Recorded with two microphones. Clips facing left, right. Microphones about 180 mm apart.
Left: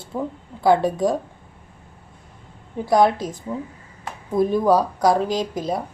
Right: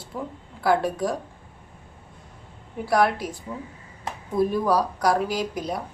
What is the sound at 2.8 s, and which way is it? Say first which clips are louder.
A woman's voice: left 4 dB; 20° left (ahead or behind).